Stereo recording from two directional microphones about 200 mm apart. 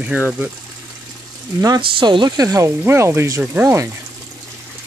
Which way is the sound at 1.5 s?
20° right (ahead or behind).